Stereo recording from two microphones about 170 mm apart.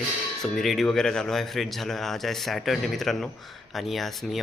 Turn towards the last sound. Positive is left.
turn(degrees=0)  # may be behind; listen again after turning